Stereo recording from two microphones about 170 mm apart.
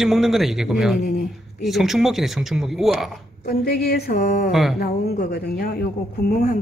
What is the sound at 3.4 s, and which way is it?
Speech, 70° left (ahead or behind).